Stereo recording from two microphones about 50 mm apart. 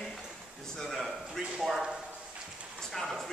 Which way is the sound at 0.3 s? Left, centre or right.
Centre.